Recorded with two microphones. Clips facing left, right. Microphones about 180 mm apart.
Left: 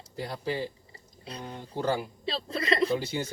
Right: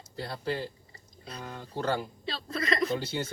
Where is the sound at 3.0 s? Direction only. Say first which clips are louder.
Left 1 dB; 10° left (ahead or behind).